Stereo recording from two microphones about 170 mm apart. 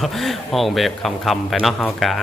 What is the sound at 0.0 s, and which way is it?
Speech, centre (ahead or behind).